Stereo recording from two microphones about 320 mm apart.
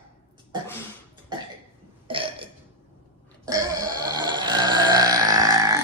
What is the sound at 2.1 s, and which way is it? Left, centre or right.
Burping, centre.